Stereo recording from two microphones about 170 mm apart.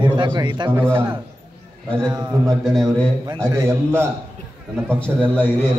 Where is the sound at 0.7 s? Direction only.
15° right (ahead or behind).